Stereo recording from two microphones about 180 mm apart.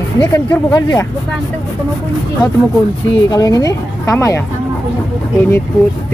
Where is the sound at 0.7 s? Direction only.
20° left (ahead or behind).